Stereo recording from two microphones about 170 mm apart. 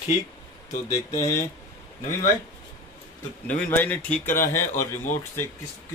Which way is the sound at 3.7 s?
10° left (ahead or behind).